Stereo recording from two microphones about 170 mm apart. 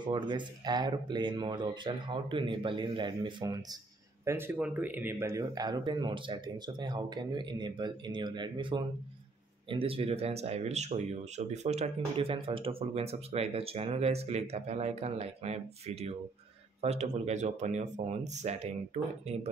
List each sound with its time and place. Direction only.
0.0 s speech: 25° right (ahead or behind)